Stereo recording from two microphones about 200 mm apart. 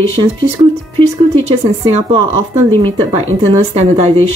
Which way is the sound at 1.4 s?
30° right (ahead or behind).